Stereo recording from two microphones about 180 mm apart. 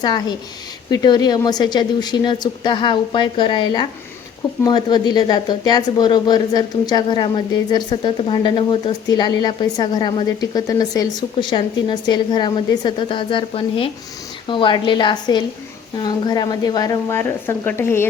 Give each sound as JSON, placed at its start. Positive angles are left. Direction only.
{"t": 0.0, "sound": "a woman's voice", "side_deg": 25}